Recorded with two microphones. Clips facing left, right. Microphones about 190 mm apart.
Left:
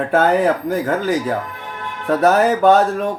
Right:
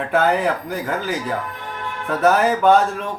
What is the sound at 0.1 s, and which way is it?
Speech, 45° left (ahead or behind).